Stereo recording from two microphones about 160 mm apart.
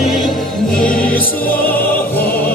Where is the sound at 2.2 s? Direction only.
70° left (ahead or behind).